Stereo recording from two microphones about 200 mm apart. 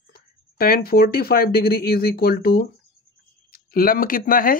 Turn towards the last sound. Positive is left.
turn(degrees=45)  # may be behind; listen again after turning